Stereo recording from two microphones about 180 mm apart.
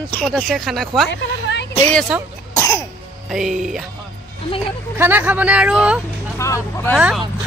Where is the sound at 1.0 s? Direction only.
75° left (ahead or behind).